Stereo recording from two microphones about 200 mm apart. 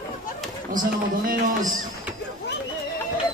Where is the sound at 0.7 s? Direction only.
45° right (ahead or behind).